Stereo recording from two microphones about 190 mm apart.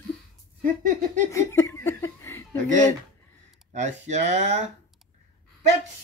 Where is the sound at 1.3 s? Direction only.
15° left (ahead or behind).